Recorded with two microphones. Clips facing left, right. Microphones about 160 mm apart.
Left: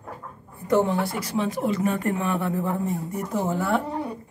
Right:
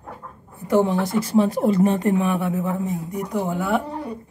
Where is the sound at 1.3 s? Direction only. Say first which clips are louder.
Right 7 dB; 35° right (ahead or behind); by 2.3 s 20° right (ahead or behind).